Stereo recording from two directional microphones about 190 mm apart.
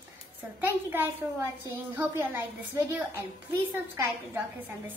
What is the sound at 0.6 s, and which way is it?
A child's voice, 10° right (ahead or behind).